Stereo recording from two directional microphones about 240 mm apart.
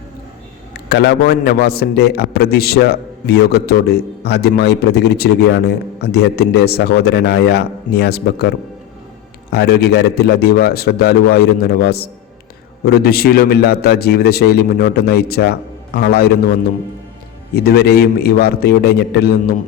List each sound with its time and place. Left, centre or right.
0.7 s a man's voice: left
17.5 s a man's voice: left